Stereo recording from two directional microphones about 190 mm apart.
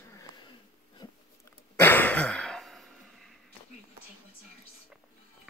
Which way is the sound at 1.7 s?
10° left (ahead or behind).